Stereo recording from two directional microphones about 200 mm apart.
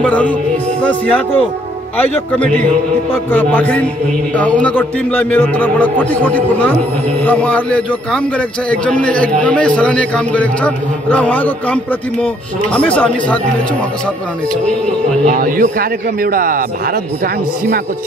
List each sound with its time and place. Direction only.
0.0 s a man's voice: 5° left (ahead or behind)
14.5 s speech: 5° left (ahead or behind)
15.2 s speech: 45° right (ahead or behind)